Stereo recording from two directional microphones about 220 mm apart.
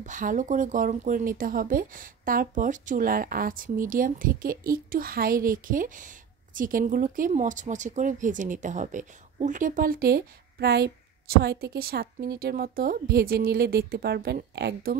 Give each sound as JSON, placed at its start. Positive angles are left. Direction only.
{"t": 0.0, "sound": "speech", "side_deg": -35}